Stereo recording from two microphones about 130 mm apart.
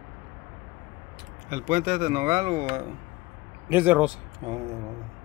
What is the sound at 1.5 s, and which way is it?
Speech, 70° right (ahead or behind).